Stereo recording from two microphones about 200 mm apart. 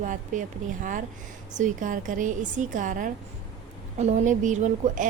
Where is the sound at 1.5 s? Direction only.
40° right (ahead or behind).